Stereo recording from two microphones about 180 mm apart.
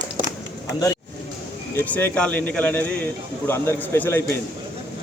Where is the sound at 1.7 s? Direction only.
10° left (ahead or behind).